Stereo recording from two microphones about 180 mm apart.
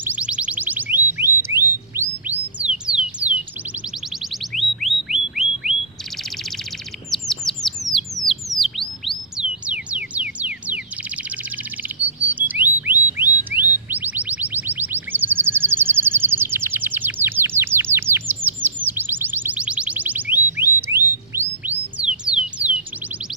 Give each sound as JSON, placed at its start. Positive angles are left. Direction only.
{"t": 0.0, "sound": "chirp tone", "side_deg": -5}
{"t": 2.6, "sound": "music", "side_deg": -5}
{"t": 4.6, "sound": "a sound", "side_deg": 0}
{"t": 7.1, "sound": "chirp", "side_deg": 0}
{"t": 8.3, "sound": "music", "side_deg": 0}
{"t": 12.3, "sound": "bird", "side_deg": -10}
{"t": 18.4, "sound": "chirp tone", "side_deg": -10}
{"t": 21.3, "sound": "music", "side_deg": -15}